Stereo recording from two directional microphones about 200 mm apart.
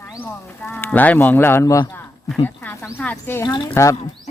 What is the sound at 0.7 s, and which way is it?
Speech, 10° left (ahead or behind).